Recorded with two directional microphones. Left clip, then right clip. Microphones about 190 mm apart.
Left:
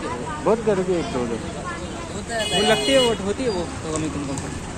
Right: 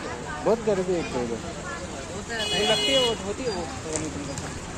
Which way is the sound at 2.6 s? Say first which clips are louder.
Left 4 dB; 40° left (ahead or behind).